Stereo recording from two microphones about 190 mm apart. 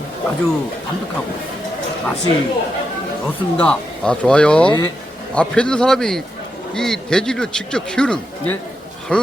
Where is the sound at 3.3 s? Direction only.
5° left (ahead or behind).